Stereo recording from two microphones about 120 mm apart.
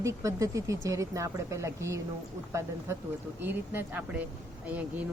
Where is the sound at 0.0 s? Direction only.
25° right (ahead or behind).